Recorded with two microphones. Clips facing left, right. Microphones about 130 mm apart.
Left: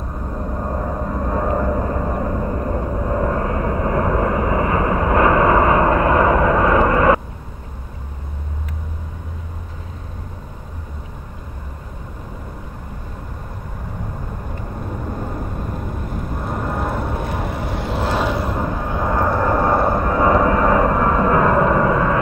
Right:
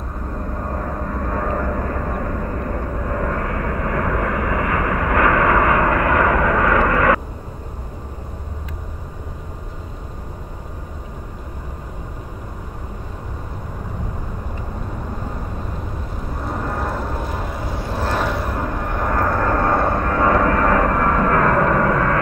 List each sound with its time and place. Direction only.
0.3 s vehicle: 15° left (ahead or behind)
16.4 s vehicle: centre (ahead or behind)
17.2 s vehicle: 65° left (ahead or behind)
17.9 s vehicle: 15° left (ahead or behind)